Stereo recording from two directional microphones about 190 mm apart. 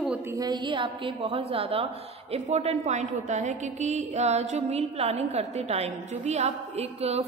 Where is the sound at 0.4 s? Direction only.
20° right (ahead or behind).